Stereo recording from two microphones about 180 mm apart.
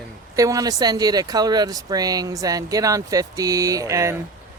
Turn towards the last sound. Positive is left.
turn(degrees=-15)  # may be behind; listen again after turning